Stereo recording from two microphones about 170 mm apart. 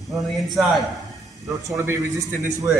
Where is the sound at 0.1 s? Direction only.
Centre (ahead or behind).